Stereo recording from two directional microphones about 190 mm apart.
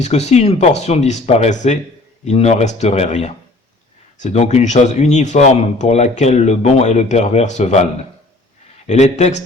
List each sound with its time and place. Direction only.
0.0 s speech: 35° left (ahead or behind)
8.9 s speech: 35° left (ahead or behind)